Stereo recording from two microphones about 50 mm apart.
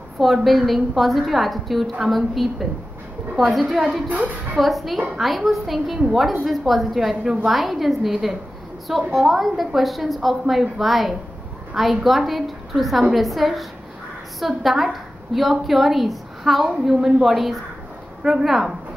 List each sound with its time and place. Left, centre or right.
0.2 s a woman's voice: centre
16.6 s a woman's voice: centre